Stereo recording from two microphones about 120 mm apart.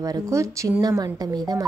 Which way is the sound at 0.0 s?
25° right (ahead or behind).